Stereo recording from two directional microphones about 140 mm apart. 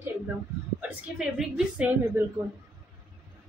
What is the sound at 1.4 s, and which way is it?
Speech, 10° right (ahead or behind).